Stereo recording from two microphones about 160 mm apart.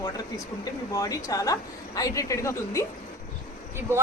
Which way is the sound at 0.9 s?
20° left (ahead or behind).